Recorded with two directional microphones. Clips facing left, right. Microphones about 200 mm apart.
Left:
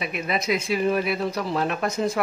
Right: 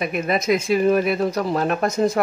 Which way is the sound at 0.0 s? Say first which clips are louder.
Right 5 dB; 45° right (ahead or behind).